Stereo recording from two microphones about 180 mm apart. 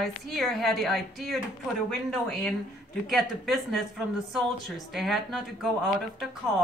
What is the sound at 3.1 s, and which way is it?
Speech, centre (ahead or behind).